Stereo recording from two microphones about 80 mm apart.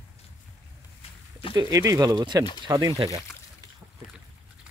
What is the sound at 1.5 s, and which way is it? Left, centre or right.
Speech, right.